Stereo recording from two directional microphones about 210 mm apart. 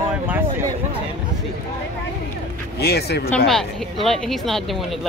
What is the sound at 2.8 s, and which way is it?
Speech, 50° left (ahead or behind).